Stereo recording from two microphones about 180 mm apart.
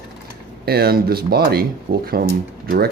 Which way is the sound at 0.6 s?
60° right (ahead or behind).